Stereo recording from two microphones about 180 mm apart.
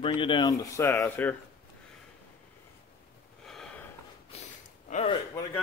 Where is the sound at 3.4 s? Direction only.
5° left (ahead or behind).